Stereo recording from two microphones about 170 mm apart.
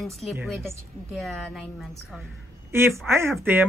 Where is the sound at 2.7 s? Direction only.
15° right (ahead or behind).